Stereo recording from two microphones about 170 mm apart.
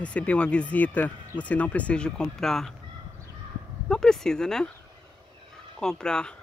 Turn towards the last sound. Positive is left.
turn(degrees=5)  # may be behind; listen again after turning